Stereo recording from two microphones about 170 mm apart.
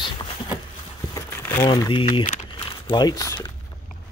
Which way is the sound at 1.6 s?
25° left (ahead or behind).